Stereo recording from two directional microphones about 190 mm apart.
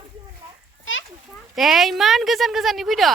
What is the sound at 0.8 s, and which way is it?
Children playing, 90° left.